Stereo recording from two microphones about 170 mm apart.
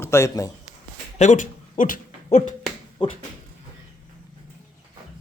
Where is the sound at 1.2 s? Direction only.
45° left (ahead or behind).